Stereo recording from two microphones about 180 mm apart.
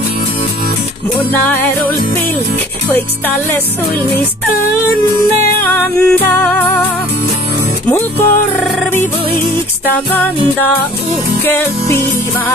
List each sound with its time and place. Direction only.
1.1 s music: 10° left (ahead or behind)
5.7 s music: 10° left (ahead or behind)
7.9 s music: 10° left (ahead or behind)
9.9 s music: 10° left (ahead or behind)
11.4 s music: 15° left (ahead or behind)